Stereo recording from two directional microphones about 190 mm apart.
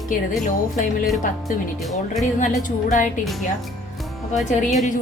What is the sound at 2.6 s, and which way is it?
Speech, 40° left (ahead or behind).